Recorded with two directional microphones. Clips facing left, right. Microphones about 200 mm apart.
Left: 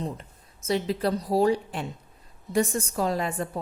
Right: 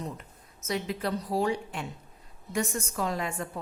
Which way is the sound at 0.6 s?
30° left (ahead or behind).